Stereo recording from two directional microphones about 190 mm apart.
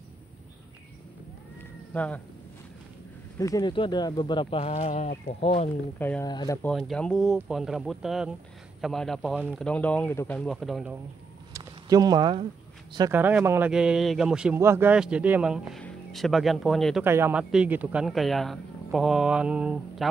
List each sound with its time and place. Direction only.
2.0 s speech: 10° left (ahead or behind)
3.3 s speech: 20° left (ahead or behind)
5.9 s speech: 10° left (ahead or behind)
6.2 s speech: 20° left (ahead or behind)
6.7 s a man's voice: centre (ahead or behind)
9.3 s speech: 10° right (ahead or behind)
9.6 s a man's voice: 5° left (ahead or behind)
11.5 s a sound: 20° right (ahead or behind)
13.1 s a man's voice: 10° right (ahead or behind)
17.0 s a man's voice: 10° right (ahead or behind)